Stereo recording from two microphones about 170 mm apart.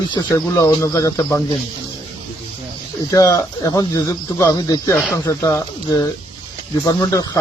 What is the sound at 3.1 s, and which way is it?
Speech, 20° left (ahead or behind).